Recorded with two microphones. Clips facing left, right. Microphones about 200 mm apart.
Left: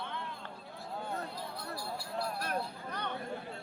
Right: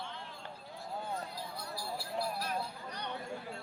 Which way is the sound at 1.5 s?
Centre (ahead or behind).